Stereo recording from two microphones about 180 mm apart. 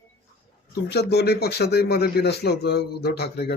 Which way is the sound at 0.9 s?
65° left (ahead or behind).